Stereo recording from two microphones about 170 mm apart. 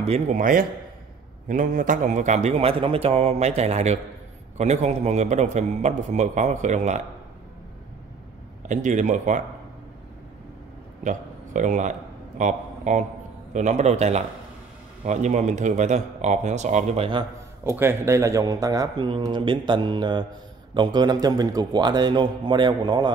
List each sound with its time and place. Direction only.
0.0 s a man's voice: 40° right (ahead or behind)
8.6 s a man's voice: 45° right (ahead or behind)
11.1 s a man's voice: 45° right (ahead or behind); by 17.3 s 30° right (ahead or behind)
17.6 s speech: 15° right (ahead or behind)